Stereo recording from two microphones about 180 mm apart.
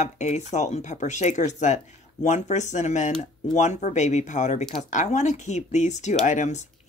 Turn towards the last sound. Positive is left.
turn(degrees=40)  # may be behind; listen again after turning